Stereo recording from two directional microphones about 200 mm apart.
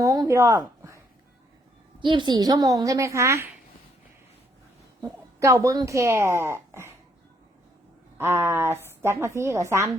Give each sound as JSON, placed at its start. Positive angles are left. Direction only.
{"t": 0.0, "sound": "a sound", "side_deg": -15}
{"t": 2.0, "sound": "a woman's voice", "side_deg": -20}
{"t": 5.0, "sound": "a woman's voice", "side_deg": -15}
{"t": 8.2, "sound": "a woman's voice", "side_deg": -10}